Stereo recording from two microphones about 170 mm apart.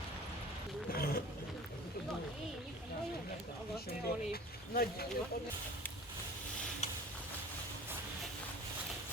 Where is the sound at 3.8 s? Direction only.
65° left (ahead or behind).